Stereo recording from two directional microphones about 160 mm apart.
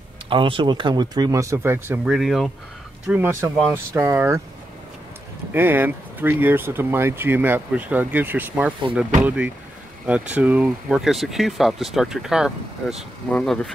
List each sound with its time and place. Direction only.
0.3 s speech: 35° right (ahead or behind); by 2.1 s 15° right (ahead or behind)
2.1 s speech: centre (ahead or behind)
3.1 s speech: 15° right (ahead or behind)
5.5 s speech: 10° right (ahead or behind); by 13.7 s 5° left (ahead or behind)